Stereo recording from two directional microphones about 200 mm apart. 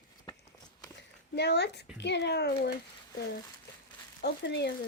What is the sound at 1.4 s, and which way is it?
Speech, 55° left (ahead or behind).